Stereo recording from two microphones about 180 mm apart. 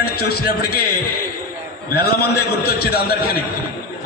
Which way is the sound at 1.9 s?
60° left (ahead or behind).